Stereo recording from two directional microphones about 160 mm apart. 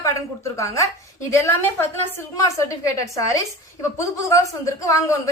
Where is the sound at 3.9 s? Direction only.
20° left (ahead or behind).